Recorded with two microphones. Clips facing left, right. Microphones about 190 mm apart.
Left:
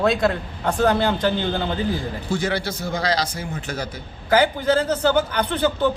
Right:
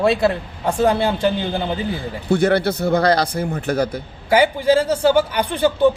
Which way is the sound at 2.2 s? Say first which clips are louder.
Right 9 dB; 60° right (ahead or behind).